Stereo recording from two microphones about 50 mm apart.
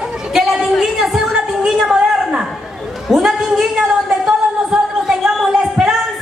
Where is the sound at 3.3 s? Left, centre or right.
Centre.